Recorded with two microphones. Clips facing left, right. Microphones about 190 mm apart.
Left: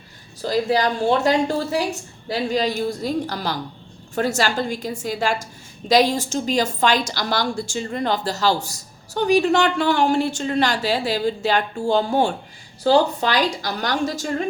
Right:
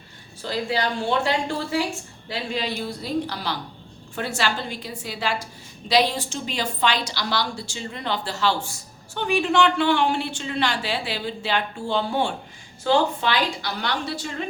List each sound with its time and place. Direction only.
0.4 s a woman's voice: 40° left (ahead or behind)